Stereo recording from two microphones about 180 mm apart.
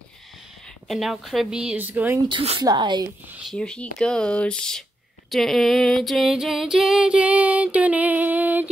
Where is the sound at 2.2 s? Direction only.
30° right (ahead or behind).